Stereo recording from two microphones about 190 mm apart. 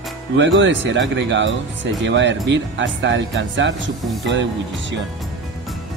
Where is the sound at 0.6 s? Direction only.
75° right (ahead or behind).